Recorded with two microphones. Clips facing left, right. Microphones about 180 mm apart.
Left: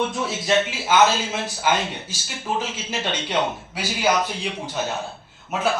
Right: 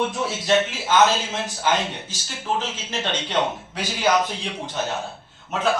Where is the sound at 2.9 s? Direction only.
15° left (ahead or behind).